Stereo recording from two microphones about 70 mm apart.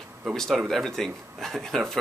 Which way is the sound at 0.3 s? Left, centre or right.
Centre.